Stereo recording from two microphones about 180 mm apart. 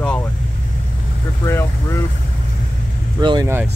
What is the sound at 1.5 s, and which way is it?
Speech, 15° left (ahead or behind).